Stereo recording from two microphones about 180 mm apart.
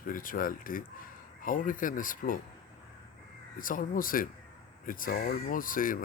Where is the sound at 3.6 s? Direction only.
50° left (ahead or behind).